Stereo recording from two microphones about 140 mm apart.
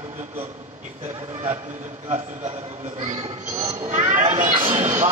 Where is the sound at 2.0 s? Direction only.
50° right (ahead or behind).